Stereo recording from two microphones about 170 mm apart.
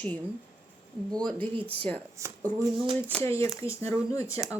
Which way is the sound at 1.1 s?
25° right (ahead or behind).